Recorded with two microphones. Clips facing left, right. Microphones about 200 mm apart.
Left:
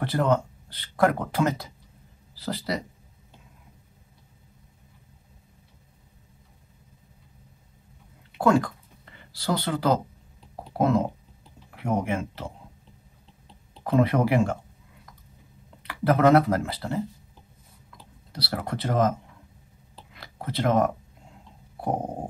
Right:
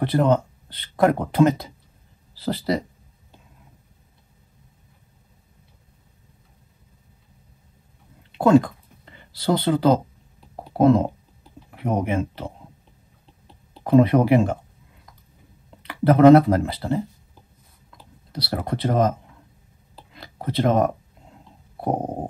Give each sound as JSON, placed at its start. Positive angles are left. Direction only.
{"t": 0.0, "sound": "speech", "side_deg": -20}
{"t": 8.4, "sound": "a sound", "side_deg": -20}
{"t": 11.7, "sound": "speech", "side_deg": -20}
{"t": 13.8, "sound": "speech", "side_deg": -25}
{"t": 15.9, "sound": "speech", "side_deg": -25}
{"t": 18.3, "sound": "speech", "side_deg": -25}
{"t": 20.2, "sound": "a sound", "side_deg": -30}
{"t": 21.8, "sound": "stomach rumble", "side_deg": -30}